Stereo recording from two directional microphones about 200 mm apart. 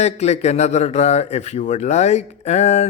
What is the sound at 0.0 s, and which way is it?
Speech, 35° left (ahead or behind).